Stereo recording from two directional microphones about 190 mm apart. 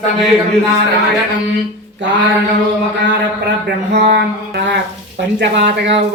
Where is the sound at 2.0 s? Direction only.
70° right (ahead or behind).